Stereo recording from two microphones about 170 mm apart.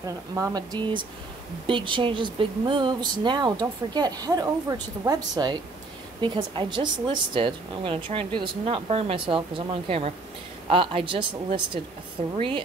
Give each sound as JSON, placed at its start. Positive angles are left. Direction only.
{"t": 0.0, "sound": "speech", "side_deg": -20}